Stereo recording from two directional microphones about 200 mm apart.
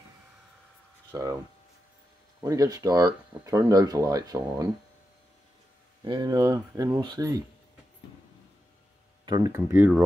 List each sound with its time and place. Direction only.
1.1 s speech: 20° right (ahead or behind)
2.4 s speech: 15° right (ahead or behind)
6.0 s speech: 20° right (ahead or behind)
9.2 s speech: 20° right (ahead or behind)